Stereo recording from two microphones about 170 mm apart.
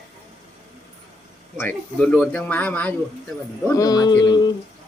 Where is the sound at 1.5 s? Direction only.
10° left (ahead or behind).